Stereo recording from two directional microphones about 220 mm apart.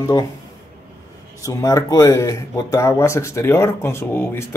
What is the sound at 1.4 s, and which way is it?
Speech, 15° left (ahead or behind).